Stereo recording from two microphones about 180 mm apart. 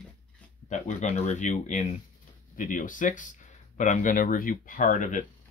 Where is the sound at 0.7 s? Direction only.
35° left (ahead or behind).